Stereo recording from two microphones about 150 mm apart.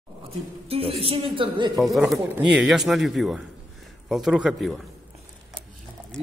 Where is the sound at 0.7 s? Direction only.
40° right (ahead or behind).